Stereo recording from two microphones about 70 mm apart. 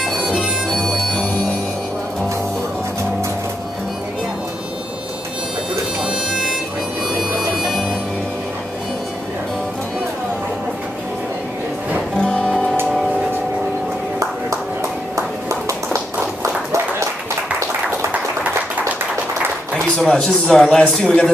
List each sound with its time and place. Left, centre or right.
0.0 s harmonica: centre
0.8 s music: centre
6.0 s music: centre
12.2 s music: centre
19.7 s a man's voice: centre